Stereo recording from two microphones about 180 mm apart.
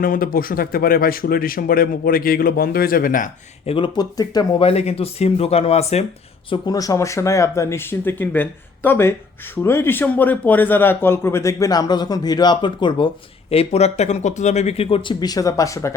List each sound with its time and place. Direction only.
0.0 s speech: 50° left (ahead or behind)
3.7 s speech: 30° left (ahead or behind)
4.7 s speech: 35° left (ahead or behind)
6.5 s a man's voice: 20° left (ahead or behind)